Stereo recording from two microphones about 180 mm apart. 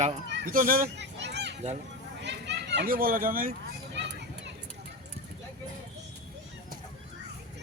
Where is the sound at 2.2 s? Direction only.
75° right (ahead or behind); by 3.5 s 50° right (ahead or behind).